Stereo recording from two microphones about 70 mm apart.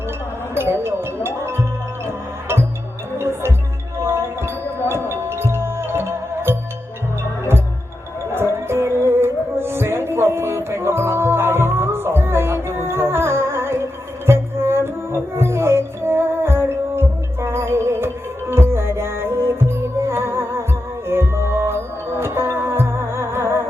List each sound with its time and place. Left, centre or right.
0.5 s music: right
4.0 s music: right
8.4 s music: right